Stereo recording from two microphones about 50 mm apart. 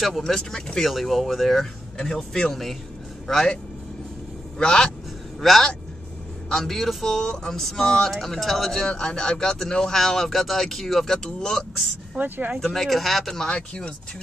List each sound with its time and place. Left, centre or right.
0.2 s speech: centre
0.8 s speech: centre
4.6 s speech: centre
5.4 s speech: centre
8.8 s speech: centre
12.2 s speech: right
12.5 s speech: centre
13.5 s speech: centre